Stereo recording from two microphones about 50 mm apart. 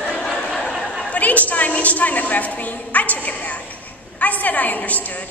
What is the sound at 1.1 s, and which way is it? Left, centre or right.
A woman's voice, left.